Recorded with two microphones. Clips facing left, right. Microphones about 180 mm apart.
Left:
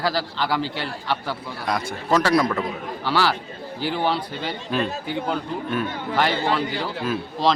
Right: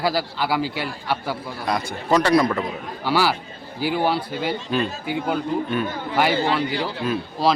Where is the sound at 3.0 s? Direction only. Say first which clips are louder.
Right 2 dB; 10° right (ahead or behind).